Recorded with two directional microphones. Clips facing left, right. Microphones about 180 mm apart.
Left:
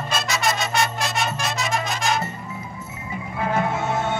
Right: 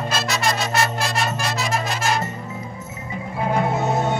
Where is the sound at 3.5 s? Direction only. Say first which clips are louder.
Right 2 dB; 20° right (ahead or behind).